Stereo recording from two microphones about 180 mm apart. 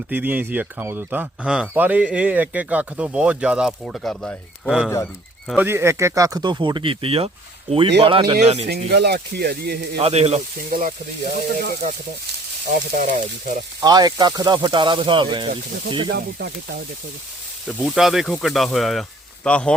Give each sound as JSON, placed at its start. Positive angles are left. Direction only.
{"t": 0.1, "sound": "speech", "side_deg": -10}
{"t": 8.9, "sound": "speech", "side_deg": -65}
{"t": 10.0, "sound": "speech", "side_deg": -35}
{"t": 10.7, "sound": "speech", "side_deg": -50}
{"t": 13.0, "sound": "speech", "side_deg": -45}
{"t": 13.8, "sound": "speech", "side_deg": -20}
{"t": 17.7, "sound": "speech", "side_deg": 0}